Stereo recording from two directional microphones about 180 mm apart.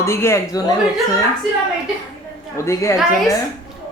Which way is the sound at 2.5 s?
15° left (ahead or behind).